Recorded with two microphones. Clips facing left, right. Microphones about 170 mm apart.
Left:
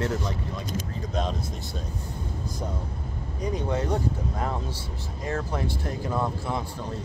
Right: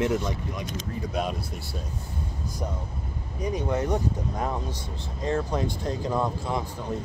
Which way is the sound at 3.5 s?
15° right (ahead or behind).